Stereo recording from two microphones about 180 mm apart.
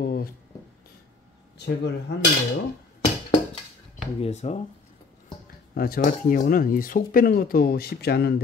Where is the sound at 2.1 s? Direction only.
70° left (ahead or behind).